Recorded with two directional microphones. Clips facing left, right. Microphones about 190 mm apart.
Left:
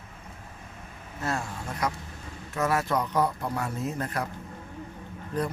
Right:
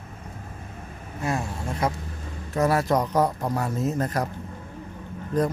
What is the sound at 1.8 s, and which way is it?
Speech, 30° right (ahead or behind).